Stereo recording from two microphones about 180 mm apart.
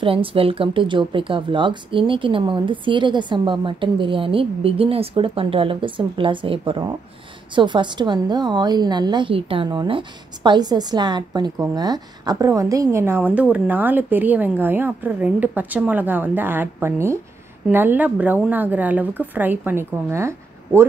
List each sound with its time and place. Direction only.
0.0 s a woman's voice: 30° right (ahead or behind); by 20.8 s 15° right (ahead or behind)